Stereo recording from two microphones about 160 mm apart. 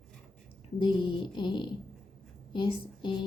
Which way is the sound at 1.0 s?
30° left (ahead or behind).